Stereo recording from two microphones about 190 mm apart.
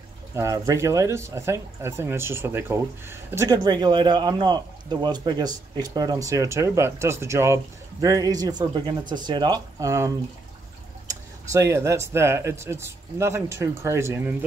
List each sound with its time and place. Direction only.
0.3 s speech: 15° right (ahead or behind)
11.5 s speech: 15° right (ahead or behind)